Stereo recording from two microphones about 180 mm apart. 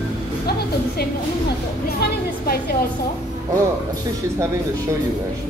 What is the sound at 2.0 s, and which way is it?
Speech, 60° left (ahead or behind).